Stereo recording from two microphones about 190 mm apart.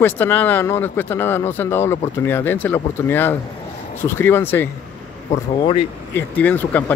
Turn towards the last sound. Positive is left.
turn(degrees=10)  # may be behind; listen again after turning